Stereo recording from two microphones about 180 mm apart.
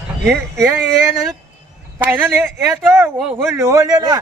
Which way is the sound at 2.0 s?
10° right (ahead or behind).